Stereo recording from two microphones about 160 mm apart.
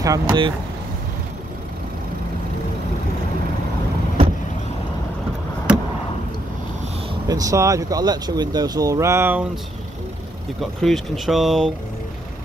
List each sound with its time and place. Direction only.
0.0 s speech: 20° right (ahead or behind)
7.2 s speech: 20° right (ahead or behind)
10.6 s speech: centre (ahead or behind)